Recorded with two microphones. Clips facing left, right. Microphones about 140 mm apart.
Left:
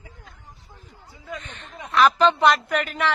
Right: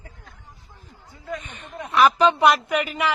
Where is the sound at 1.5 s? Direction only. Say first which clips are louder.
Right 1 dB; 10° right (ahead or behind).